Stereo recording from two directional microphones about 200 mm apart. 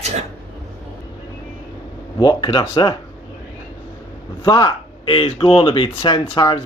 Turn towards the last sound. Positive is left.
turn(degrees=25)  # may be behind; listen again after turning